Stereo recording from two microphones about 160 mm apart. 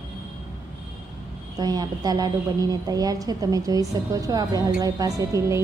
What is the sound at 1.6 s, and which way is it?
A woman's voice, 25° right (ahead or behind).